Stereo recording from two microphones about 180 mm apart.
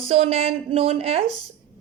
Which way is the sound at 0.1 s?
35° right (ahead or behind).